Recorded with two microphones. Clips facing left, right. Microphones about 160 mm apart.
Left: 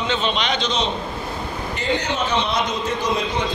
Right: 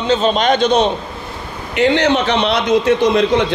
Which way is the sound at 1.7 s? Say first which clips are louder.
Right 11 dB; 75° right (ahead or behind).